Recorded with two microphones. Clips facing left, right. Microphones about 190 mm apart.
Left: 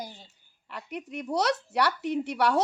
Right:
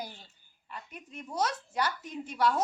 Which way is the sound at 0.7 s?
75° left (ahead or behind).